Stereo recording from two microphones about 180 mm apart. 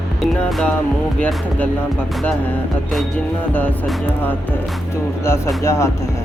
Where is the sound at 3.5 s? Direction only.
10° left (ahead or behind).